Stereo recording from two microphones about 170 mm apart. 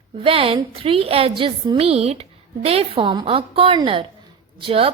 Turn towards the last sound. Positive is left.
turn(degrees=-35)  # may be behind; listen again after turning